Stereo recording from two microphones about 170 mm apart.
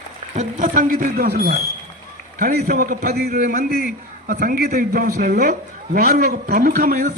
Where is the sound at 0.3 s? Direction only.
50° right (ahead or behind).